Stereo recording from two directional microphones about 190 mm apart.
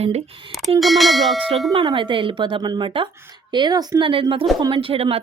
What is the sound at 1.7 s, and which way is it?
A woman's voice, 25° right (ahead or behind).